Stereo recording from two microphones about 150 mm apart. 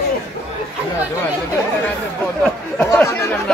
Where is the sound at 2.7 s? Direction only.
15° left (ahead or behind).